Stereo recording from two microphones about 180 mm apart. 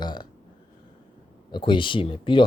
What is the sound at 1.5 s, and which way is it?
Speech, 25° left (ahead or behind).